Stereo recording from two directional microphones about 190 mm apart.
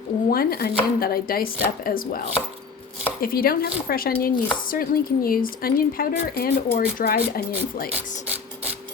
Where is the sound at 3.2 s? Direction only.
50° left (ahead or behind).